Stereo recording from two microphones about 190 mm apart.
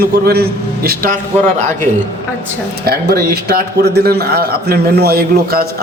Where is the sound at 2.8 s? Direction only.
55° right (ahead or behind).